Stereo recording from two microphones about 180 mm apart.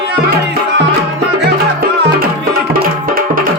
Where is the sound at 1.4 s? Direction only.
60° right (ahead or behind).